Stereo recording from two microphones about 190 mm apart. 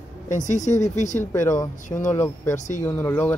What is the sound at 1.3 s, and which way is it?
Speech, 15° left (ahead or behind).